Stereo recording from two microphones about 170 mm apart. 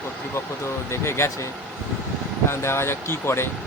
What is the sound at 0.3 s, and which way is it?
Speech, 15° left (ahead or behind).